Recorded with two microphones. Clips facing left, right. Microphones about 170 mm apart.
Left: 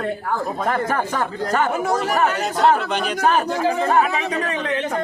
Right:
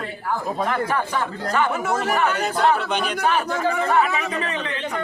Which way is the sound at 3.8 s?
50° left (ahead or behind).